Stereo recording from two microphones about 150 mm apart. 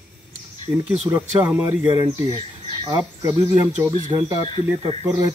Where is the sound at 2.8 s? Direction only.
30° right (ahead or behind).